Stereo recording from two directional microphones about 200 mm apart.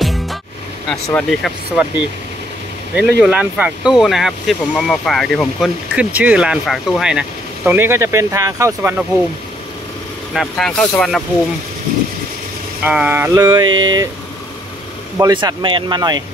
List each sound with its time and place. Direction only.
0.0 s music: centre (ahead or behind)
0.8 s speech: centre (ahead or behind)
3.0 s speech: 5° right (ahead or behind)
10.3 s speech: 5° left (ahead or behind)
12.8 s a sound: 5° right (ahead or behind)
13.7 s speech: 20° right (ahead or behind)
15.1 s speech: 20° right (ahead or behind)